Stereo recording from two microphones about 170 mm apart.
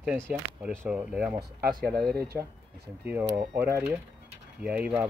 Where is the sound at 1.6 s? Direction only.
60° right (ahead or behind).